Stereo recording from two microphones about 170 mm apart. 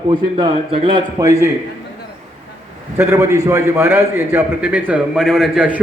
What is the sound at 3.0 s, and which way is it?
A man's voice, 15° right (ahead or behind).